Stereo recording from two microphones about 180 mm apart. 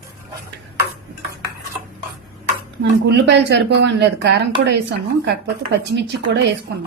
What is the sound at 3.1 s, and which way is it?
Speech, 70° right (ahead or behind).